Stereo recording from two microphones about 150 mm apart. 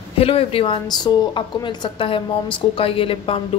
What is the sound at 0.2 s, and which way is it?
A woman's voice, 40° left (ahead or behind).